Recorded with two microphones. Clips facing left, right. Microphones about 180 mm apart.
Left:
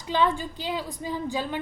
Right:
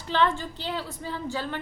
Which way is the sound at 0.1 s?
15° left (ahead or behind).